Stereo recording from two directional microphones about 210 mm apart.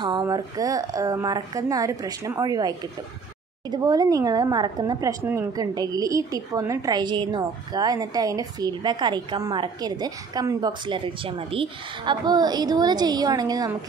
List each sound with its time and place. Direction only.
0.0 s a woman's voice: 20° right (ahead or behind)